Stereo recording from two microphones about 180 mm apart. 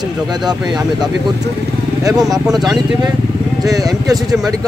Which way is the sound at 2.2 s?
Centre (ahead or behind).